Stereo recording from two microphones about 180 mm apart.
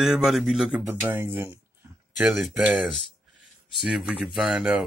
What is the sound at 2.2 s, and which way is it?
Speech, centre (ahead or behind).